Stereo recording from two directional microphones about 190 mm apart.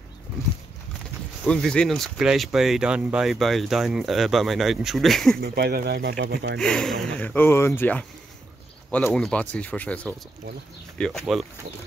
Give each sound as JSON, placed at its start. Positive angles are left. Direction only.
{"t": 1.4, "sound": "speech", "side_deg": 5}
{"t": 5.4, "sound": "speech", "side_deg": -55}
{"t": 6.6, "sound": "speech", "side_deg": 5}